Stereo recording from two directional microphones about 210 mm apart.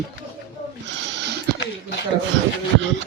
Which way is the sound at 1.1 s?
55° right (ahead or behind).